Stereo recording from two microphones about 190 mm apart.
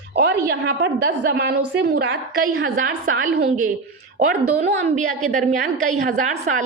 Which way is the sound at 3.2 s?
45° right (ahead or behind).